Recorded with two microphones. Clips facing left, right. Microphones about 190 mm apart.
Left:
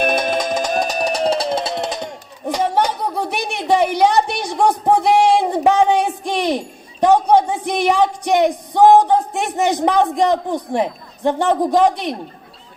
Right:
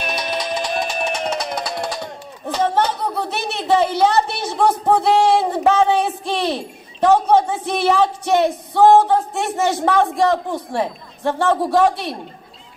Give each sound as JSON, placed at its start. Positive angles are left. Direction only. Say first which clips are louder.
{"t": 0.0, "sound": "music", "louder": "left 6 dB", "side_deg": 50}
{"t": 10.1, "sound": "a man's voice", "louder": "left 1 dB", "side_deg": 15}